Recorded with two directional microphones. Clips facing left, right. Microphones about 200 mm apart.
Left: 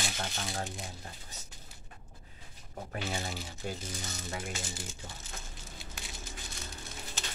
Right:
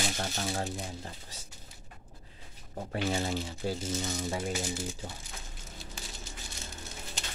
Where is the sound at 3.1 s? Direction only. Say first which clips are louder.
Right 7 dB; 50° right (ahead or behind).